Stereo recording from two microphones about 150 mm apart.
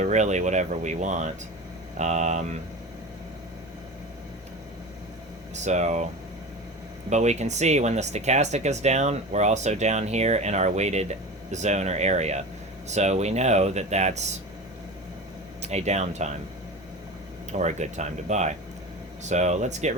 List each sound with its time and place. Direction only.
0.0 s speech: 50° right (ahead or behind)
5.5 s speech: 50° right (ahead or behind)
7.1 s speech: 50° right (ahead or behind)
15.6 s speech: 45° right (ahead or behind)
17.5 s speech: 50° right (ahead or behind)